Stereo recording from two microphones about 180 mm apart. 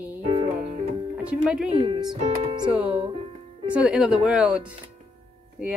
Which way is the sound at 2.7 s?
5° right (ahead or behind).